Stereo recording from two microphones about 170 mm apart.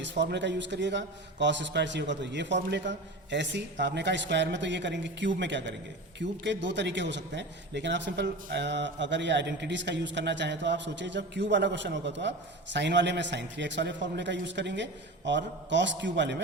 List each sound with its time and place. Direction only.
0.0 s a man's voice: 90° right